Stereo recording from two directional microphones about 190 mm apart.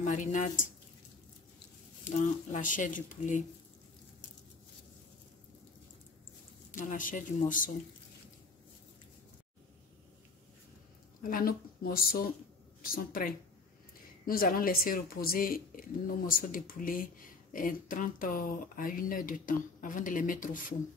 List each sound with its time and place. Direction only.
0.0 s speech: 40° left (ahead or behind)
2.0 s speech: 40° left (ahead or behind)
6.7 s speech: 45° left (ahead or behind)
11.2 s speech: 50° left (ahead or behind)